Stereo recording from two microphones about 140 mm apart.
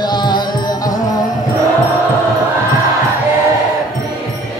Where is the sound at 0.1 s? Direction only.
30° left (ahead or behind).